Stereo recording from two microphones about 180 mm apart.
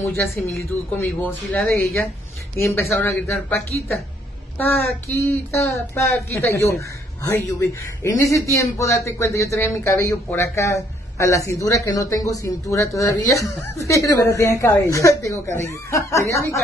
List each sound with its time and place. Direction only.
0.0 s speech: 10° left (ahead or behind)